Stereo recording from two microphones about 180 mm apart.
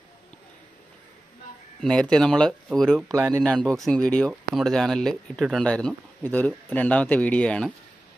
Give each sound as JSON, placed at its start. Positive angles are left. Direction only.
{"t": 1.8, "sound": "speech", "side_deg": 5}
{"t": 3.1, "sound": "speech", "side_deg": -20}
{"t": 3.3, "sound": "speech", "side_deg": 5}